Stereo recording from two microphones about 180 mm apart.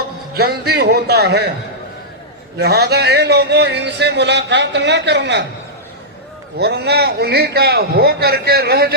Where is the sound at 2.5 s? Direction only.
60° right (ahead or behind).